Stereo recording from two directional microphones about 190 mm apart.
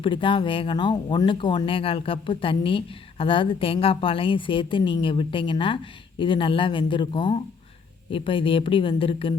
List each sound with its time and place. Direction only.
0.0 s speech: 25° left (ahead or behind)